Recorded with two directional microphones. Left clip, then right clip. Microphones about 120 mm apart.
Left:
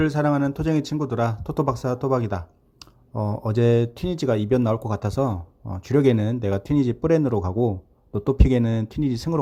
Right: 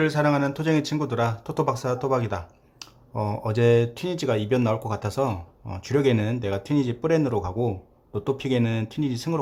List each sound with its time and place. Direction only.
0.0 s speech: 35° left (ahead or behind)
5.3 s speech: 15° left (ahead or behind)
5.8 s a man's voice: 40° left (ahead or behind)